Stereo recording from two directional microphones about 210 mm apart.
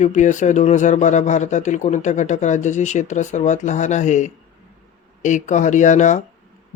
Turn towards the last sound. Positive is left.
turn(degrees=35)  # may be behind; listen again after turning